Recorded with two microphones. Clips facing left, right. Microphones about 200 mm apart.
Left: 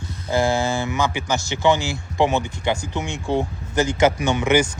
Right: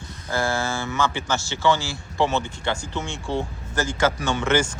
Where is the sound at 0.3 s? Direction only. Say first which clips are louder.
Left 5 dB; 15° left (ahead or behind).